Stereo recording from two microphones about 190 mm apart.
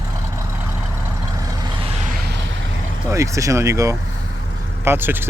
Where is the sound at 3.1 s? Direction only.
15° right (ahead or behind).